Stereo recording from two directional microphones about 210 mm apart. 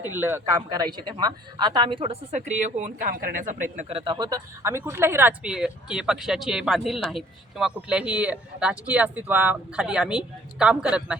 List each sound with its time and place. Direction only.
0.0 s speech: 10° right (ahead or behind)